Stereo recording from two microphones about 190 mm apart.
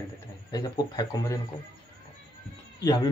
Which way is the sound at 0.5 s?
20° left (ahead or behind).